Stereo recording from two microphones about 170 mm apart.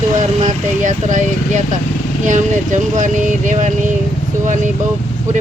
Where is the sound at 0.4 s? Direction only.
45° right (ahead or behind).